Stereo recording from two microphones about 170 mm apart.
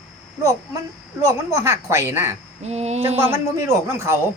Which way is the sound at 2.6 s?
40° right (ahead or behind).